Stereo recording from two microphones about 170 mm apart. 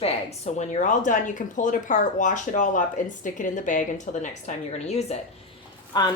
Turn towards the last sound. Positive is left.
turn(degrees=25)  # may be behind; listen again after turning